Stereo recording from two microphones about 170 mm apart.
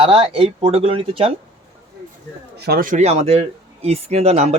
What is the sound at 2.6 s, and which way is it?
Speech, 60° right (ahead or behind).